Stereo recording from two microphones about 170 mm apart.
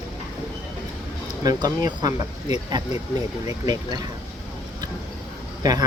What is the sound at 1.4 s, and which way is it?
Speech, 25° right (ahead or behind).